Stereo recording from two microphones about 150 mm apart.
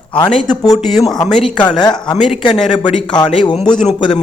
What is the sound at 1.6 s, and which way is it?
Speech, 30° left (ahead or behind).